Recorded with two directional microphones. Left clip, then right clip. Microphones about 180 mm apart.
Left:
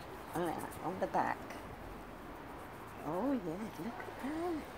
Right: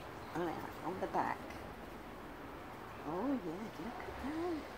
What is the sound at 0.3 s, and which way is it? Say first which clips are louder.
Speech: left 2 dB; 55° left (ahead or behind).